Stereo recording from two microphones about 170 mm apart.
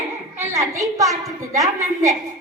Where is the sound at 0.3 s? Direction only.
15° right (ahead or behind).